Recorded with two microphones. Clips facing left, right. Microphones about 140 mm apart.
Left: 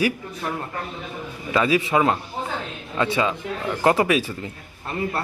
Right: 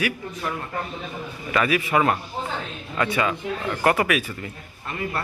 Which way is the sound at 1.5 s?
25° left (ahead or behind).